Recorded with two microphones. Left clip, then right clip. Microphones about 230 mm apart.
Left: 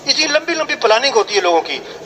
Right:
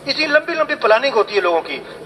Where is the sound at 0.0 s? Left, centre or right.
Left.